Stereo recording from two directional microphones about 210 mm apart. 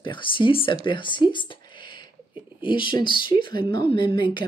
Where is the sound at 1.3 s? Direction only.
20° left (ahead or behind).